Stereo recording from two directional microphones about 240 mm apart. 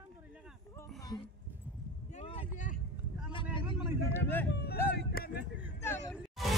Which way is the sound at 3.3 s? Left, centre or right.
Left.